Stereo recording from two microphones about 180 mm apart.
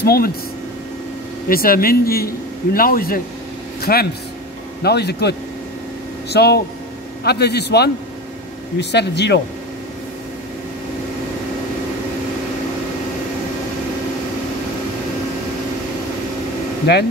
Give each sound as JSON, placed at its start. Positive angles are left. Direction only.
{"t": 0.0, "sound": "speech", "side_deg": 60}
{"t": 1.5, "sound": "a man's voice", "side_deg": 55}
{"t": 6.3, "sound": "a man's voice", "side_deg": 65}
{"t": 16.9, "sound": "a man's voice", "side_deg": 65}